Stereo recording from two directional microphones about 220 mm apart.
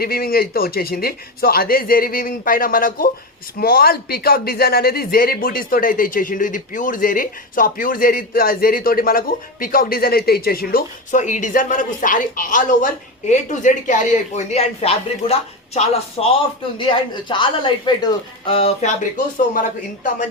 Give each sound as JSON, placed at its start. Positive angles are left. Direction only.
{"t": 0.0, "sound": "speech", "side_deg": 45}